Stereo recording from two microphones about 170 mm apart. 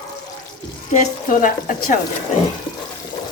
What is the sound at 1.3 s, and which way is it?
Speech, 50° left (ahead or behind).